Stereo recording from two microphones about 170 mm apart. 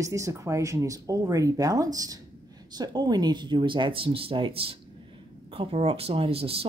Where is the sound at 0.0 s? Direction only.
20° right (ahead or behind).